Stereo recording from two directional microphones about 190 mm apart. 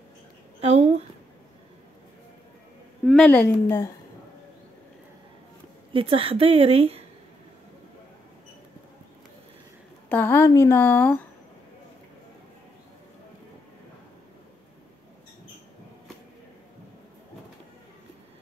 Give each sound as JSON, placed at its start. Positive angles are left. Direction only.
{"t": 0.6, "sound": "a sound", "side_deg": -35}
{"t": 3.1, "sound": "a woman's voice", "side_deg": 5}
{"t": 5.9, "sound": "a woman's voice", "side_deg": -30}
{"t": 10.0, "sound": "a woman's voice", "side_deg": 10}